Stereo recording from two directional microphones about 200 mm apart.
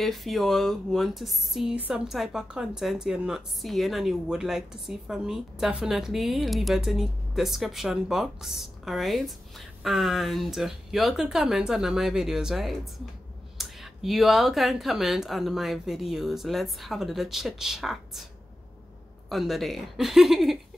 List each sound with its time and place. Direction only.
0.0 s speech: centre (ahead or behind)
19.2 s speech: centre (ahead or behind)